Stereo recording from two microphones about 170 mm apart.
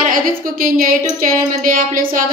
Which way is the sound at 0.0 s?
55° right (ahead or behind).